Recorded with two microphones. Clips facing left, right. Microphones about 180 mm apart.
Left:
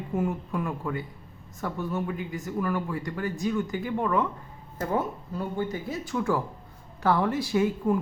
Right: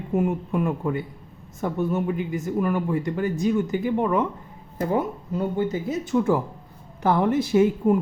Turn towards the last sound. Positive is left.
turn(degrees=-20)  # may be behind; listen again after turning